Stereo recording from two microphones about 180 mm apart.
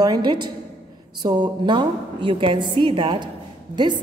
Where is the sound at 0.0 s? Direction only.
20° right (ahead or behind).